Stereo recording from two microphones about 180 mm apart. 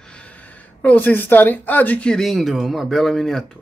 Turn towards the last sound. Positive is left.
turn(degrees=5)  # may be behind; listen again after turning